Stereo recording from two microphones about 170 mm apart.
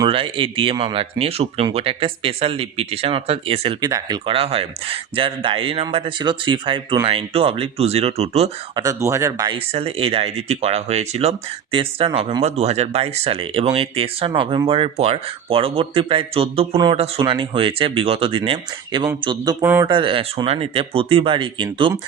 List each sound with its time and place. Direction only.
0.0 s speech: 30° right (ahead or behind)
4.3 s speech: 35° right (ahead or behind)
8.7 s speech: 20° right (ahead or behind)
9.6 s speech: 35° right (ahead or behind)
19.6 s speech: 15° right (ahead or behind)
19.9 s speech: 30° right (ahead or behind)